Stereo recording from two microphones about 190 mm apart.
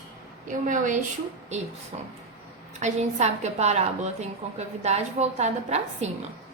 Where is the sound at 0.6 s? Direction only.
40° right (ahead or behind).